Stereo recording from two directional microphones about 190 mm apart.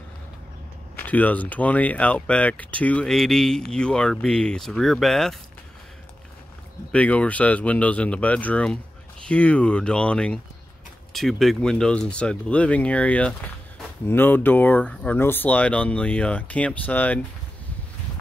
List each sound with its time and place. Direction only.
0.9 s speech: 10° left (ahead or behind)
6.9 s speech: 5° left (ahead or behind)